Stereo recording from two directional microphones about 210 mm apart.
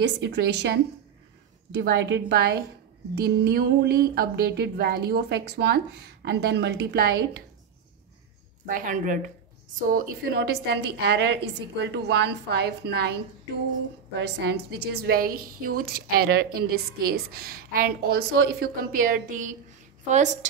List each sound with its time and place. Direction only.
0.0 s a woman's voice: 55° right (ahead or behind)
8.6 s a woman's voice: 40° right (ahead or behind)
14.2 s a woman's voice: 50° right (ahead or behind); by 20.3 s 35° right (ahead or behind)